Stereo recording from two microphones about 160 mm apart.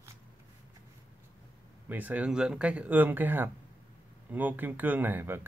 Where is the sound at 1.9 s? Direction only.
10° right (ahead or behind).